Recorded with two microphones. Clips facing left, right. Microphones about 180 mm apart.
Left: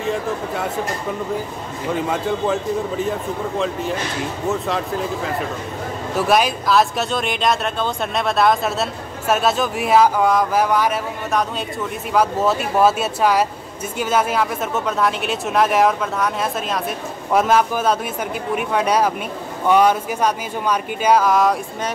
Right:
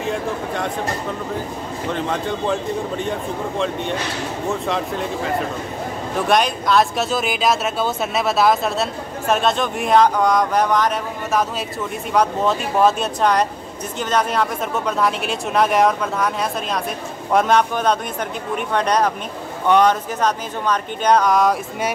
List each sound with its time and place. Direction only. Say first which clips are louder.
0.0 s speech: left 1 dB; centre (ahead or behind)
1.9 s speech: left 2 dB; 5° left (ahead or behind)